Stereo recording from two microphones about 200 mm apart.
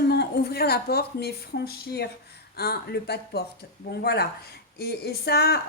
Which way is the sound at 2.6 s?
50° left (ahead or behind).